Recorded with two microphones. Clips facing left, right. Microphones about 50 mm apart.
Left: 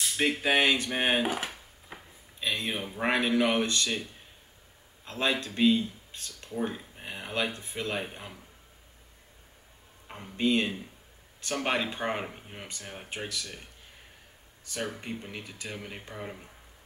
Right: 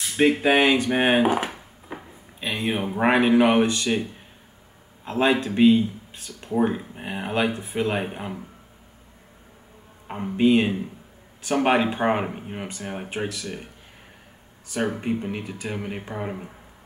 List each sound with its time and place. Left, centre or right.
0.0 s a sound: right
0.8 s speech: right
3.6 s speech: centre
5.0 s speech: right
6.6 s speech: right
10.0 s speech: right
10.3 s speech: centre
13.1 s speech: centre
15.0 s speech: right